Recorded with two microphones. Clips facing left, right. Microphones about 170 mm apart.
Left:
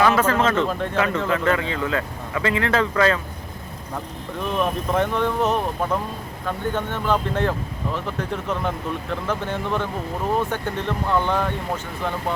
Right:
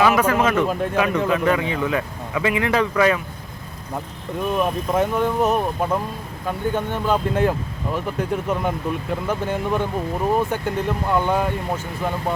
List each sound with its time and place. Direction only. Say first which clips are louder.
0.0 s speech: right 1 dB; 15° right (ahead or behind)
4.5 s speech: right 1 dB; 5° right (ahead or behind)